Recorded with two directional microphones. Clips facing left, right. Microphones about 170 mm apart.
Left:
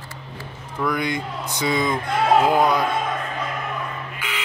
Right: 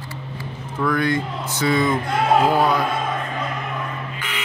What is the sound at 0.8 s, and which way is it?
Speech, 15° left (ahead or behind).